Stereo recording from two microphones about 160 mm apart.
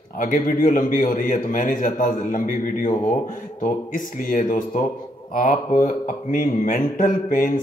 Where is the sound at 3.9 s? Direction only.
55° left (ahead or behind).